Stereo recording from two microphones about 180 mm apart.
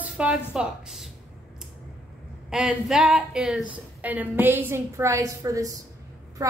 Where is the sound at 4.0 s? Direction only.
10° right (ahead or behind).